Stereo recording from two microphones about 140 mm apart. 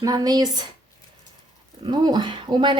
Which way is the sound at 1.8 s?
30° right (ahead or behind).